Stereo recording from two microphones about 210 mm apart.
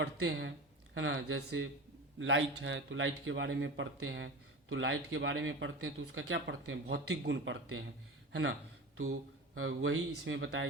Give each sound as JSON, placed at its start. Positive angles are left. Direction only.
{"t": 0.0, "sound": "speech", "side_deg": -60}
{"t": 9.6, "sound": "speech", "side_deg": -70}